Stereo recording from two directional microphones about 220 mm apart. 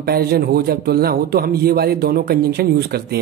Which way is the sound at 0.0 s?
45° right (ahead or behind).